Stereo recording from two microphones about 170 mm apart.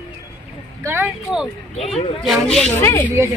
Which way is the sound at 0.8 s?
15° right (ahead or behind).